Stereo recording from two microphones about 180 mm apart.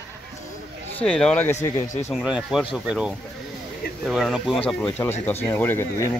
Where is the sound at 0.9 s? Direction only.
5° left (ahead or behind).